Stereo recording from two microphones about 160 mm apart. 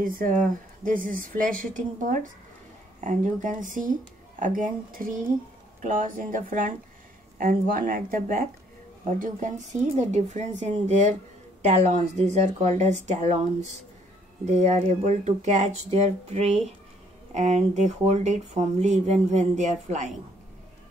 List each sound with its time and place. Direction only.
0.0 s a woman's voice: 60° right (ahead or behind)
14.4 s speech: 45° right (ahead or behind)